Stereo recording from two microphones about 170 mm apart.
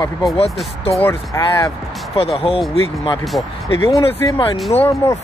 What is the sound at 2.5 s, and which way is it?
Speech, 35° left (ahead or behind).